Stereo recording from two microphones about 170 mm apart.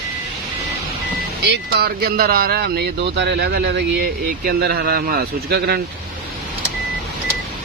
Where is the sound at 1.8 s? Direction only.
65° right (ahead or behind).